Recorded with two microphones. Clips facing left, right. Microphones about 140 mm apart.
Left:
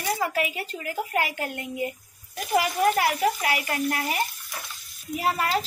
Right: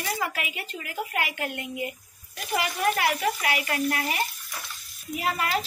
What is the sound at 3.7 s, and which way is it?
Speech, 25° left (ahead or behind).